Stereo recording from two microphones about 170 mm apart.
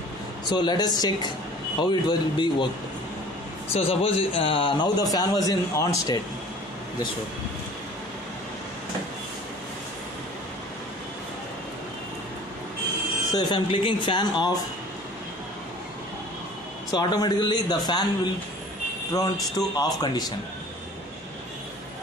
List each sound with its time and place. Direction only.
0.5 s speech: 25° left (ahead or behind)
3.7 s speech: 35° left (ahead or behind)
13.3 s speech: 25° left (ahead or behind)
16.9 s speech: 25° left (ahead or behind)